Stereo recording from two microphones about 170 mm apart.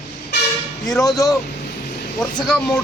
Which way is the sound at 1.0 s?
20° left (ahead or behind).